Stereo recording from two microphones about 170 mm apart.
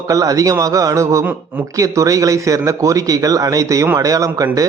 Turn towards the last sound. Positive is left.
turn(degrees=-20)  # may be behind; listen again after turning